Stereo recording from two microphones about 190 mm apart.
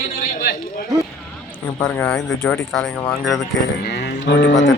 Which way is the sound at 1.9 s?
5° left (ahead or behind).